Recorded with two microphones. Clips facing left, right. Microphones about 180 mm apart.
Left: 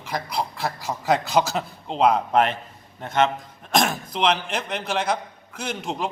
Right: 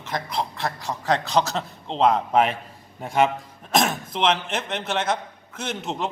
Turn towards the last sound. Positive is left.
turn(degrees=0)  # may be behind; listen again after turning